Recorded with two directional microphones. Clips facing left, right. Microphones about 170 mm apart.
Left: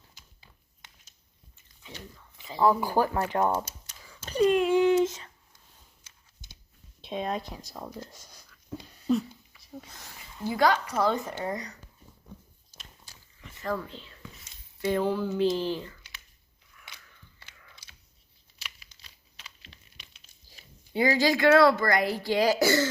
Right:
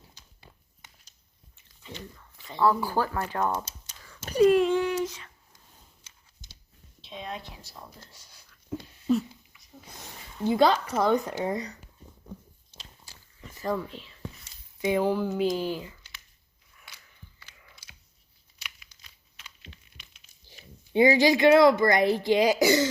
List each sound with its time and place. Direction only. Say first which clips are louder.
2.6 s speech: left 1 dB; 15° left (ahead or behind)
4.2 s speech: right 3 dB; 10° right (ahead or behind)
4.7 s a sound: left 5 dB; 20° left (ahead or behind)
7.0 s speech: left 7 dB; 50° left (ahead or behind)
9.0 s dog: right 1 dB; centre (ahead or behind)
9.9 s speech: right 3 dB; 20° right (ahead or behind)
13.5 s a sound: right 2 dB; 30° right (ahead or behind)
13.7 s speech: right 3 dB; 5° right (ahead or behind)
19.7 s a sound: right 5 dB; 30° right (ahead or behind)
20.5 s speech: right 6 dB; 20° right (ahead or behind)